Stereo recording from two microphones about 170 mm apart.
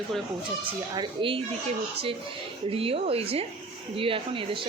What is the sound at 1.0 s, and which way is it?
Speech, 30° right (ahead or behind).